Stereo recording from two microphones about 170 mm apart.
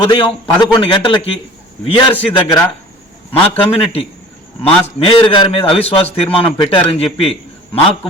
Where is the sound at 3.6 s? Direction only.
35° left (ahead or behind).